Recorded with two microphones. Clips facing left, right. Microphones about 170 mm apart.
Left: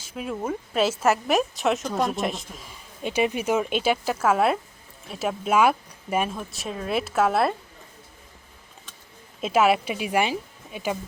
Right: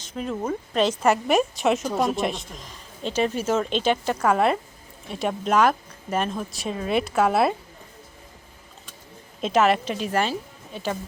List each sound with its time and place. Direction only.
0.0 s a woman's voice: 5° left (ahead or behind)
9.4 s speech: 5° left (ahead or behind)